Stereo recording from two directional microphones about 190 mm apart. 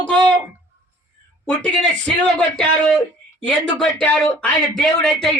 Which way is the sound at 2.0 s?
5° left (ahead or behind).